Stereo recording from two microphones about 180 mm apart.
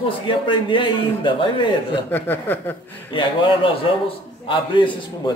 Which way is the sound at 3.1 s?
30° left (ahead or behind).